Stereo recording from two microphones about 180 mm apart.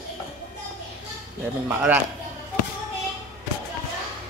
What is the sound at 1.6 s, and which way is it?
Speech, 10° right (ahead or behind).